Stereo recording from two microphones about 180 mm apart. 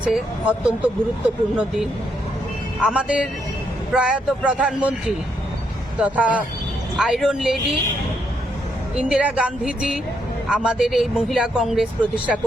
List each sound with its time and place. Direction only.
0.0 s speech: 5° right (ahead or behind)
2.8 s speech: 5° right (ahead or behind)
9.0 s speech: 5° right (ahead or behind)